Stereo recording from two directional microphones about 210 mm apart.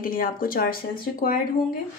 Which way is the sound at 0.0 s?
45° left (ahead or behind).